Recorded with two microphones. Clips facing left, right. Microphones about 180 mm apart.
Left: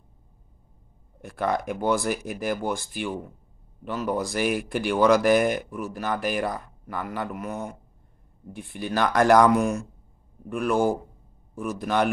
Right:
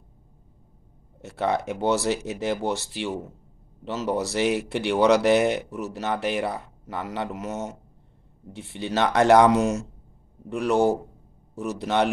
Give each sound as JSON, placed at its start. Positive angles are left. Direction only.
{"t": 1.2, "sound": "speech", "side_deg": -25}
{"t": 8.7, "sound": "speech", "side_deg": -25}